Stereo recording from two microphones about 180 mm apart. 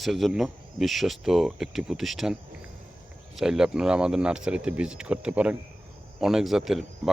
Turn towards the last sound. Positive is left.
turn(degrees=0)  # may be behind; listen again after turning